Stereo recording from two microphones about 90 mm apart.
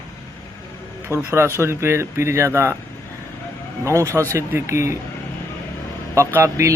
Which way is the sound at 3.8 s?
35° right (ahead or behind).